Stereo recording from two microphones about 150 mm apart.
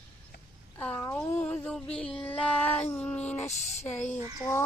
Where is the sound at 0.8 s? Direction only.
10° left (ahead or behind).